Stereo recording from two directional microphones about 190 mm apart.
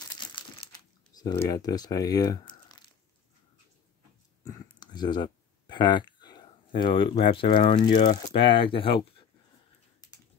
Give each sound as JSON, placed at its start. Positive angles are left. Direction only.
{"t": 0.3, "sound": "crumpling", "side_deg": 25}
{"t": 1.1, "sound": "speech", "side_deg": 20}
{"t": 4.7, "sound": "a sound", "side_deg": 20}
{"t": 8.2, "sound": "speech", "side_deg": 30}